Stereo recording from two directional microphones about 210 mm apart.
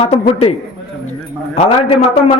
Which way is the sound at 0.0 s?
30° left (ahead or behind).